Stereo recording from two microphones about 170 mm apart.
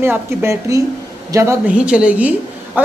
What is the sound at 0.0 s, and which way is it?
A woman's voice, 15° right (ahead or behind).